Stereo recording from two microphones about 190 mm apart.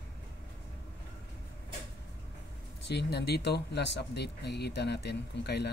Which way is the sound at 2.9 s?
60° left (ahead or behind).